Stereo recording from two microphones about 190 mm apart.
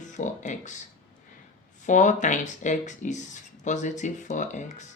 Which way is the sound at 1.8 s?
40° left (ahead or behind).